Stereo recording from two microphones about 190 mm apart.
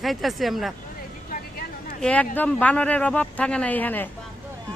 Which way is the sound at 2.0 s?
5° left (ahead or behind).